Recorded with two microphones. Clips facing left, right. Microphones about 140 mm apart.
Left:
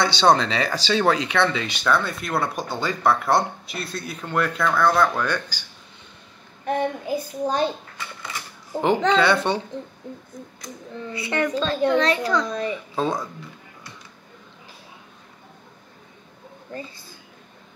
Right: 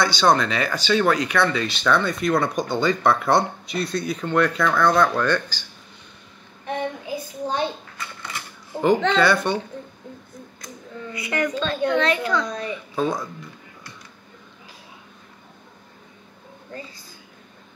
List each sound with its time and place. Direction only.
0.0 s speech: 25° left (ahead or behind)
1.9 s speech: 5° left (ahead or behind)
6.6 s a child's voice: 40° left (ahead or behind)
9.2 s speech: 25° left (ahead or behind)
11.1 s a child's voice: 30° left (ahead or behind)